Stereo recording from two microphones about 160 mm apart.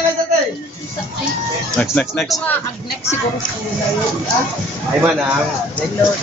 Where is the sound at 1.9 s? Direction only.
5° left (ahead or behind).